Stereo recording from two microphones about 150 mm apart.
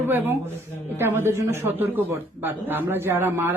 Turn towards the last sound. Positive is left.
turn(degrees=-15)  # may be behind; listen again after turning